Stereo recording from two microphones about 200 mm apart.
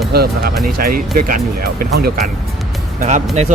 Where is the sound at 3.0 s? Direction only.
35° right (ahead or behind).